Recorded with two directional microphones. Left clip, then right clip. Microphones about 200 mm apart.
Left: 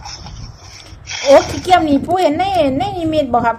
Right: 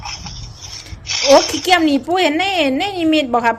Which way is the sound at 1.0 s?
25° right (ahead or behind).